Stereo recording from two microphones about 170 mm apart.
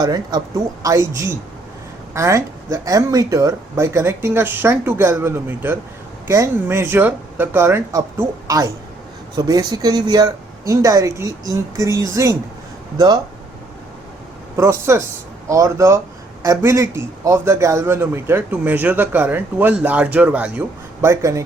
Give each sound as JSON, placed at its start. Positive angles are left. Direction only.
{"t": 0.0, "sound": "a man's voice", "side_deg": -25}
{"t": 14.5, "sound": "a man's voice", "side_deg": -15}